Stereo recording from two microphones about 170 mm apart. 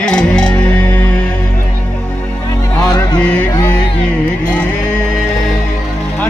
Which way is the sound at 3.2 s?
5° left (ahead or behind).